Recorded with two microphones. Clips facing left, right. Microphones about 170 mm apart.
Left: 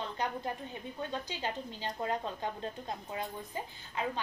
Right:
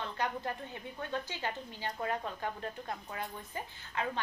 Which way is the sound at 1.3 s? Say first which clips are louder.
Left 2 dB; 20° left (ahead or behind).